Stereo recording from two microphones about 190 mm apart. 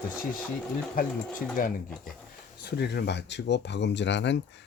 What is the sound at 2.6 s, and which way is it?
Speech, 60° left (ahead or behind).